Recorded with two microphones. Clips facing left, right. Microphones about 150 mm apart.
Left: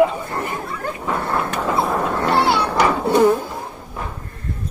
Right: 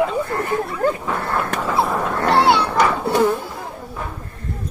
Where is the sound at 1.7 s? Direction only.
Centre (ahead or behind).